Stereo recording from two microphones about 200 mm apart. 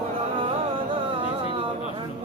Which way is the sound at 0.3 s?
25° right (ahead or behind).